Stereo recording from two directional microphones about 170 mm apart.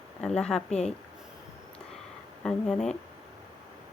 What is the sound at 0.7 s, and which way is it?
Speech, 40° left (ahead or behind).